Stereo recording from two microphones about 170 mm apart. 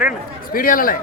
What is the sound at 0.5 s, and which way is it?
Speech, 55° left (ahead or behind).